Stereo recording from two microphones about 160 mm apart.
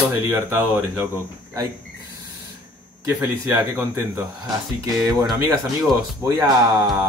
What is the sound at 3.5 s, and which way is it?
Speech, 20° right (ahead or behind).